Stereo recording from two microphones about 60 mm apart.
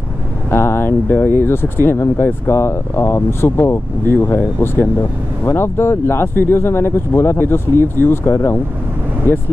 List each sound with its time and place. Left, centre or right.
0.5 s speech: left